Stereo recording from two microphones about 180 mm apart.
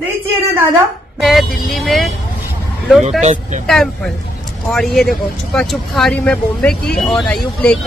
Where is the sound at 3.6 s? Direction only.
Centre (ahead or behind).